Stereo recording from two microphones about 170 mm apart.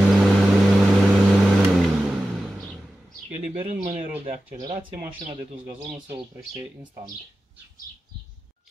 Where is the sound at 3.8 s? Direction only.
40° right (ahead or behind).